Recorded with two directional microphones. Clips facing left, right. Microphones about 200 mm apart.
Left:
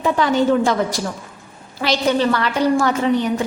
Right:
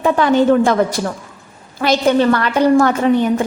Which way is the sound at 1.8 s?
50° right (ahead or behind).